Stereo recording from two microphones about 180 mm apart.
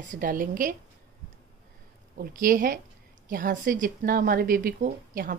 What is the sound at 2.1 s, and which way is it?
Speech, 50° right (ahead or behind).